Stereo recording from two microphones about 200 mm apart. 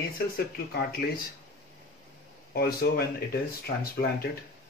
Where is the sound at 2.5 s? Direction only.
50° left (ahead or behind).